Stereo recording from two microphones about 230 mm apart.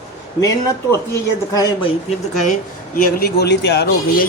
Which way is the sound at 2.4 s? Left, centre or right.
Left.